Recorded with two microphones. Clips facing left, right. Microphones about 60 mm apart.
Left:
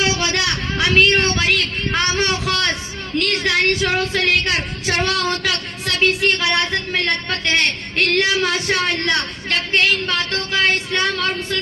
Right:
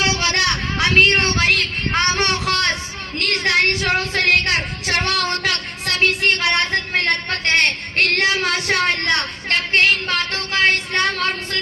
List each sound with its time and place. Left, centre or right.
0.0 s a sound: right
3.2 s a woman's voice: right
9.0 s a woman's voice: right